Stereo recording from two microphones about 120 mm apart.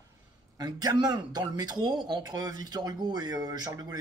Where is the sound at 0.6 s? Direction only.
35° right (ahead or behind).